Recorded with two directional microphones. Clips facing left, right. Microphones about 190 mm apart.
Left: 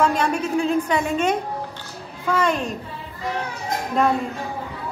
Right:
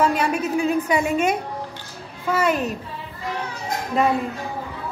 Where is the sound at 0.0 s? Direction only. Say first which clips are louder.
Even; 5° right (ahead or behind).